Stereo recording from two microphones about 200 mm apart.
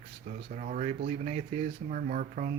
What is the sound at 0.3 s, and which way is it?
Speech, 40° right (ahead or behind).